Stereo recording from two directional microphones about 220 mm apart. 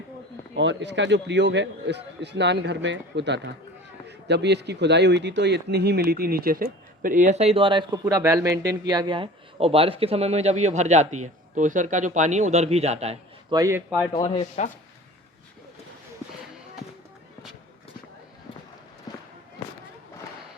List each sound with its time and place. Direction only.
0.5 s speech: 55° right (ahead or behind); by 13.6 s 30° right (ahead or behind)
13.6 s speech: 10° right (ahead or behind)
14.1 s speech: 20° left (ahead or behind)
14.3 s speech: 30° left (ahead or behind)